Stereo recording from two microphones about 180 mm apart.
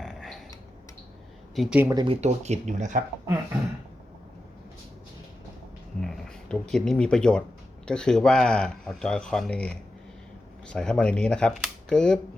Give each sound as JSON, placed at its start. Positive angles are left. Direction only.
{"t": 0.0, "sound": "a sound", "side_deg": 0}
{"t": 1.5, "sound": "speech", "side_deg": 0}
{"t": 1.8, "sound": "speech", "side_deg": -15}
{"t": 2.0, "sound": "speech", "side_deg": -40}
{"t": 6.0, "sound": "speech", "side_deg": 5}